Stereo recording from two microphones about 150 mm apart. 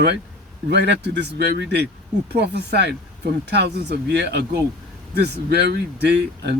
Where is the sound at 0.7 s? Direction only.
90° right.